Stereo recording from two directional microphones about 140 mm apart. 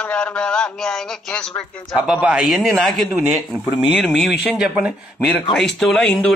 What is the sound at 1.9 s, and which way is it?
A man's voice, 5° right (ahead or behind).